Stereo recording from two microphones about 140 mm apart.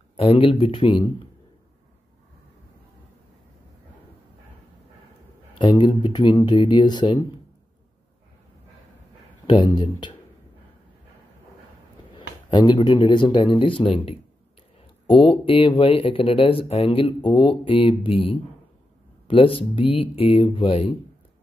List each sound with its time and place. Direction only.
0.1 s speech: 40° left (ahead or behind)
5.6 s speech: 30° left (ahead or behind)
9.5 s speech: 35° left (ahead or behind)
12.2 s a sound: 35° left (ahead or behind)
12.9 s speech: 35° left (ahead or behind)
15.1 s speech: 40° left (ahead or behind)